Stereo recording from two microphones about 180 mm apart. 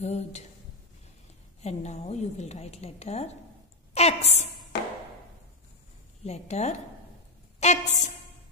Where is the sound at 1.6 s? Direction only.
40° left (ahead or behind).